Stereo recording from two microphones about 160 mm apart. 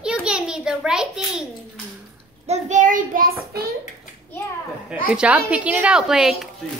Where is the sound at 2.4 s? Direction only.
45° right (ahead or behind); by 3.6 s 65° right (ahead or behind).